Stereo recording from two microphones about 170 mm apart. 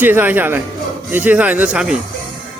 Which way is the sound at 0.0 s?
10° right (ahead or behind).